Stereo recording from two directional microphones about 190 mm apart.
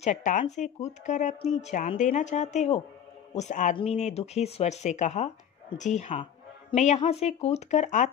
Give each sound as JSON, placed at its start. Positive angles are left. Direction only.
{"t": 0.0, "sound": "speech", "side_deg": 40}